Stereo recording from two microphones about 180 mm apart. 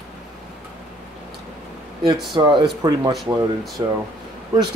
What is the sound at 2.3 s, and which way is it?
Speech, 25° right (ahead or behind).